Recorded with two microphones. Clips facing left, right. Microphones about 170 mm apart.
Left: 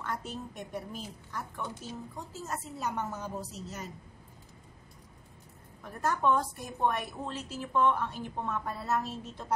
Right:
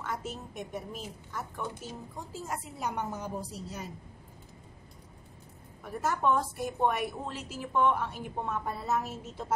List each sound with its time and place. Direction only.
0.0 s a woman's voice: 5° right (ahead or behind)
5.9 s a woman's voice: 5° right (ahead or behind)